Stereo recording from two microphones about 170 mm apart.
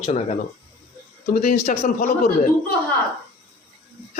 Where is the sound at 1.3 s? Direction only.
65° left (ahead or behind).